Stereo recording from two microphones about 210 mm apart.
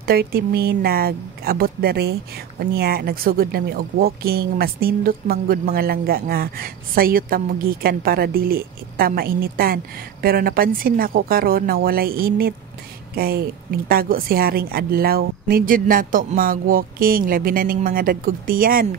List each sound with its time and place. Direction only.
0.0 s speech: 45° right (ahead or behind)